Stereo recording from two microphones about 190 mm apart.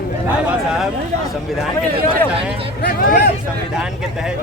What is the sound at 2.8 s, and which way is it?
Speech, 50° left (ahead or behind).